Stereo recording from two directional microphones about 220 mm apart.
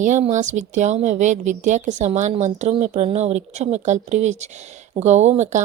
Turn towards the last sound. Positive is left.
turn(degrees=-30)  # may be behind; listen again after turning